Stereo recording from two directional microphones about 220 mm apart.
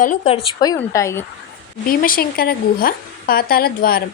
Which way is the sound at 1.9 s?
40° left (ahead or behind).